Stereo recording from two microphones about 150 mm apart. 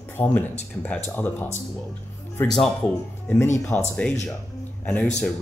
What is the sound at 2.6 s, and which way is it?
Speech, 10° left (ahead or behind).